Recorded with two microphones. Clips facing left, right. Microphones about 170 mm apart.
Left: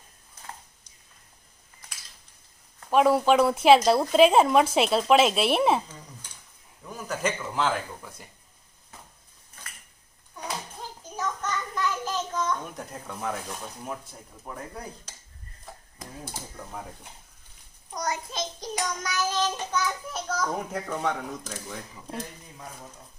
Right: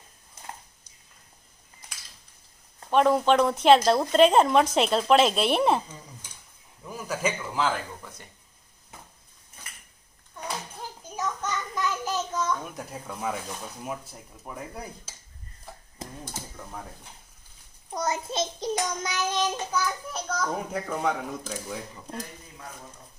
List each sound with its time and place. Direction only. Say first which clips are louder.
2.9 s speech: left 1 dB; 5° left (ahead or behind)
6.8 s speech: even; 5° right (ahead or behind)
11.2 s child singing: even; 10° right (ahead or behind)
13.8 s speech: right 1 dB; 5° right (ahead or behind)
16.0 s a sound: right 3 dB; 25° right (ahead or behind)
17.9 s child singing: right 3 dB; 25° right (ahead or behind)
19.7 s speech: even; centre (ahead or behind)